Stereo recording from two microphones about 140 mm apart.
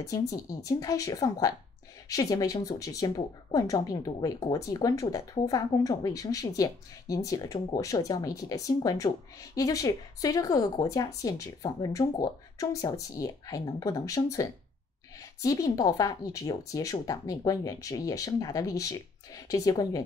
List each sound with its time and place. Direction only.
0.0 s speech: 25° left (ahead or behind)